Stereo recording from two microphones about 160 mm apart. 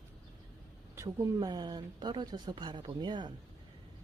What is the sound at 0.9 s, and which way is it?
Speech, 20° right (ahead or behind).